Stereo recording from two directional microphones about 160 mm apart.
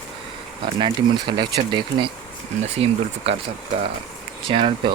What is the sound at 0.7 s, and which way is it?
Speech, 30° right (ahead or behind).